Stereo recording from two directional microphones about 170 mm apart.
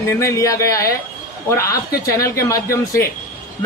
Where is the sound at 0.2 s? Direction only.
20° left (ahead or behind).